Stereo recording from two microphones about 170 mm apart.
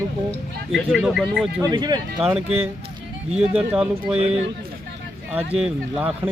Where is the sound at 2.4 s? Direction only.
35° right (ahead or behind).